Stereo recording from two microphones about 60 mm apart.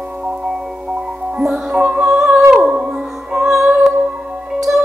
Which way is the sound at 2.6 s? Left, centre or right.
Right.